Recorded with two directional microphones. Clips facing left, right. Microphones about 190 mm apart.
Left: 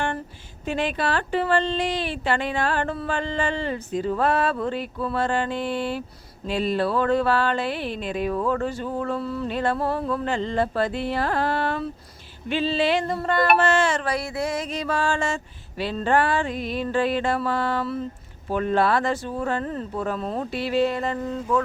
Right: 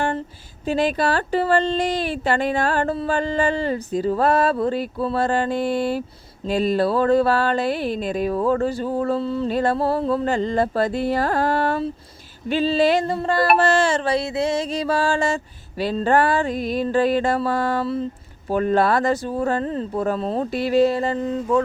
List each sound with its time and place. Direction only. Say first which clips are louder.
0.6 s speech: right 5 dB; 35° right (ahead or behind)
9.5 s speech: right 4 dB; 40° right (ahead or behind)
10.2 s speech: right 4 dB; 40° right (ahead or behind)
21.2 s speech: right 4 dB; 20° right (ahead or behind)